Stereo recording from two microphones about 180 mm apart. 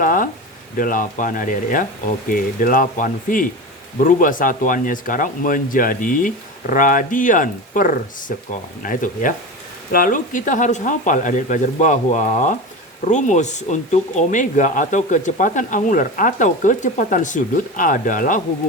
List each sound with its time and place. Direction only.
0.0 s speech: 50° left (ahead or behind)